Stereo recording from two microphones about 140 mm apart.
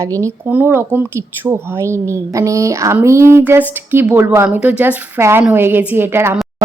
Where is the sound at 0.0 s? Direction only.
20° right (ahead or behind).